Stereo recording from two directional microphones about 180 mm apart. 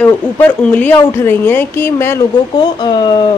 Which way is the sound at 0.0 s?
10° left (ahead or behind).